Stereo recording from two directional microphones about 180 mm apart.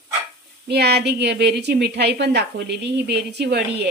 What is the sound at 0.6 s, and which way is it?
A woman's voice, 65° right (ahead or behind).